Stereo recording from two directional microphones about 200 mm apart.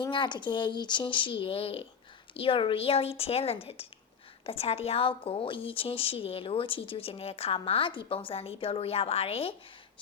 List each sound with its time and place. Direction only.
0.0 s a woman's voice: 25° left (ahead or behind)